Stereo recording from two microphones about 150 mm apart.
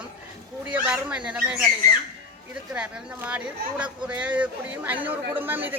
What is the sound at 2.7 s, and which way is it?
Speech, 10° right (ahead or behind).